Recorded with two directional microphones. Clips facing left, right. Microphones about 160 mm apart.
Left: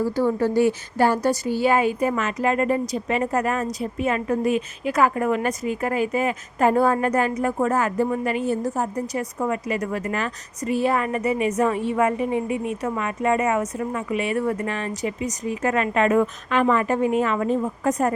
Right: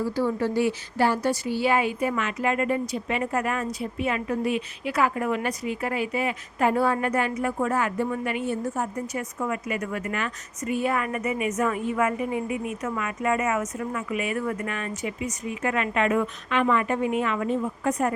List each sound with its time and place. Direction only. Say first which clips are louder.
0.0 s a woman's voice: left 4 dB; 45° left (ahead or behind)